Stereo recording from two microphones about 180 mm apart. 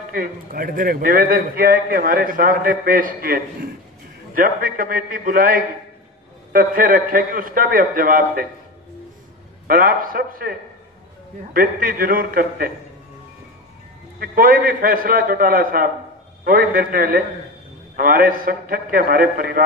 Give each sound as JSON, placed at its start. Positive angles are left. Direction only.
{"t": 0.1, "sound": "a man's voice", "side_deg": -50}
{"t": 9.7, "sound": "a man's voice", "side_deg": -50}
{"t": 11.5, "sound": "a man's voice", "side_deg": -55}
{"t": 14.2, "sound": "a man's voice", "side_deg": -55}